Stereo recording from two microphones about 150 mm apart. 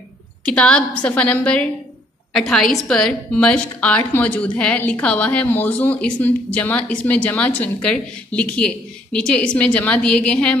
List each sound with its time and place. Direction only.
0.5 s a woman's voice: 5° left (ahead or behind)